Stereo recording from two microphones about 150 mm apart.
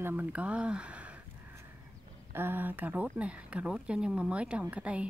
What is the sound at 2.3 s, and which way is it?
Speech, 15° right (ahead or behind).